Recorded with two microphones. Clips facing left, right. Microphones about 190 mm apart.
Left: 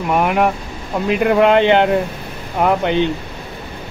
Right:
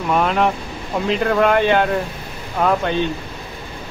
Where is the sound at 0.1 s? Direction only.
15° left (ahead or behind).